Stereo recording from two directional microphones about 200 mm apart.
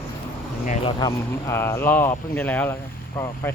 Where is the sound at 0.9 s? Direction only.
20° left (ahead or behind).